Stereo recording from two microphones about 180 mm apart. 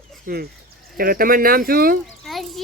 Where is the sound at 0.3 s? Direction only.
50° right (ahead or behind).